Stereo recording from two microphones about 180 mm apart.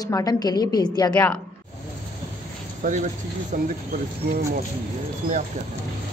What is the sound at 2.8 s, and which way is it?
Speech, 45° right (ahead or behind).